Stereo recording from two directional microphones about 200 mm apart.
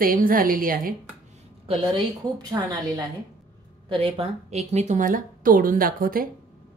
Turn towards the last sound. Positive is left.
turn(degrees=-45)  # may be behind; listen again after turning